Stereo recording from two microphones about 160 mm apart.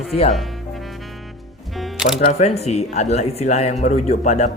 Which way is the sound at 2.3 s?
45° left (ahead or behind).